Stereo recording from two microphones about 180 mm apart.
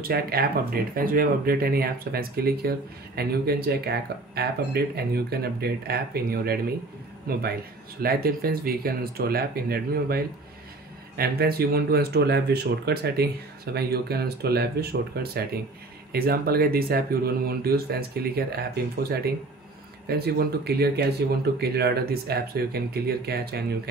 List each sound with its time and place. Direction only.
0.0 s speech: 55° right (ahead or behind)
8.0 s speech: 55° right (ahead or behind)